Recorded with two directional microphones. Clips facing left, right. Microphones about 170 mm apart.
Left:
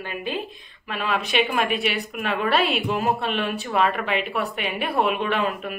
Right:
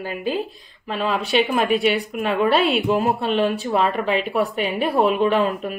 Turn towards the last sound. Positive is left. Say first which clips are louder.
# right 5 dB
turn(degrees=-35)  # may be behind; listen again after turning